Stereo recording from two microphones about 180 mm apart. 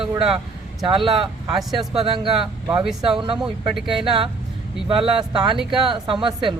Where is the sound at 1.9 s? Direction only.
30° right (ahead or behind).